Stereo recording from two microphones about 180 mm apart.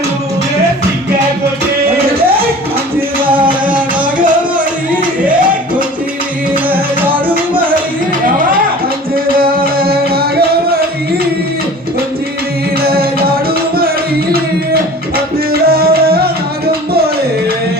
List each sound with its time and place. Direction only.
3.2 s music: 30° right (ahead or behind)
5.2 s music: 10° right (ahead or behind)
9.1 s music: 55° right (ahead or behind)
12.8 s music: 55° right (ahead or behind)
15.6 s music: 55° right (ahead or behind)